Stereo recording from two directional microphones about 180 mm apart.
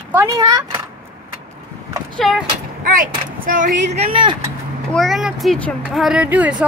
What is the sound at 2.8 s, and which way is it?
Speech, 50° right (ahead or behind).